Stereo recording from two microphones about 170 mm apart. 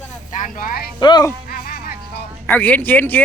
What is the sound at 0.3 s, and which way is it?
Speech, 50° left (ahead or behind).